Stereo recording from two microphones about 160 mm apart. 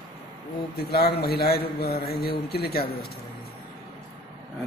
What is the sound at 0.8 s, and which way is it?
A man's voice, 80° left.